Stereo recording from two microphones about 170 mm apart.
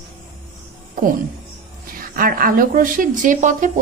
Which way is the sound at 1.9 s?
55° right (ahead or behind).